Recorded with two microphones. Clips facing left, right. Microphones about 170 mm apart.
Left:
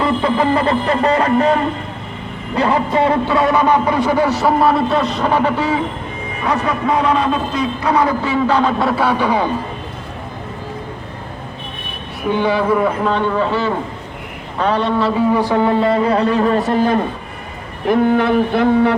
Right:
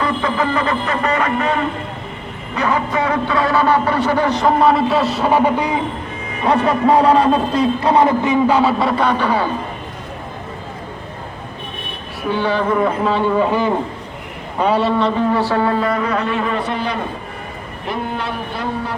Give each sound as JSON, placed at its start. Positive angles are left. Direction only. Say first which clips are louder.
{"t": 0.0, "sound": "a man's voice", "louder": "left 3 dB", "side_deg": 30}
{"t": 2.6, "sound": "a man's voice", "louder": "left 3 dB", "side_deg": 30}
{"t": 6.4, "sound": "a man's voice", "louder": "right 4 dB", "side_deg": -30}
{"t": 12.3, "sound": "a man's voice", "louder": "left 2 dB", "side_deg": 15}
{"t": 15.3, "sound": "a man's voice", "louder": "left 2 dB", "side_deg": 15}
{"t": 17.8, "sound": "speech", "louder": "left 10 dB", "side_deg": 55}